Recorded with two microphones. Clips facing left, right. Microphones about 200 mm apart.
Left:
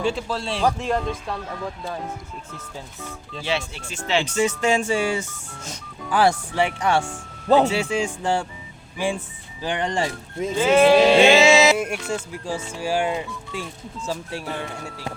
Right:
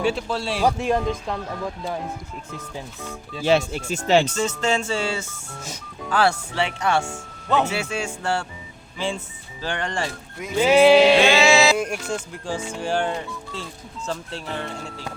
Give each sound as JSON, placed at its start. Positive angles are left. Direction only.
{"t": 0.0, "sound": "speech", "side_deg": 0}
{"t": 3.4, "sound": "speech", "side_deg": -45}
{"t": 4.4, "sound": "speech", "side_deg": 15}
{"t": 10.6, "sound": "speech", "side_deg": -10}
{"t": 11.2, "sound": "music", "side_deg": 25}
{"t": 11.8, "sound": "speech", "side_deg": 5}